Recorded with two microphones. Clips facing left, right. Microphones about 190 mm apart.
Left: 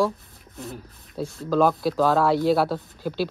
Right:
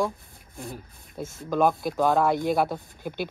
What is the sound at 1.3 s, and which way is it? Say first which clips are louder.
Speech: left 2 dB; 20° right (ahead or behind).